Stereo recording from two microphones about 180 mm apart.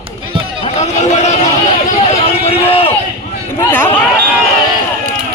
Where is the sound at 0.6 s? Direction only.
35° left (ahead or behind).